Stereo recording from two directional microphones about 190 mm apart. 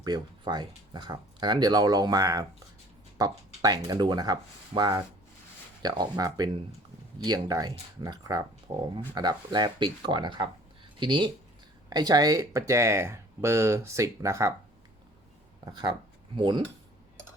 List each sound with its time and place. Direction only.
0.0 s speech: 20° right (ahead or behind)
15.6 s speech: 25° right (ahead or behind)